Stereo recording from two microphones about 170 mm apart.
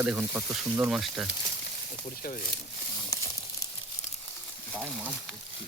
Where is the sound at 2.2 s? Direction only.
55° left (ahead or behind).